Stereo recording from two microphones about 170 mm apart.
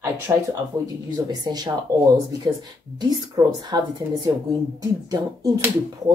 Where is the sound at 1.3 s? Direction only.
25° right (ahead or behind).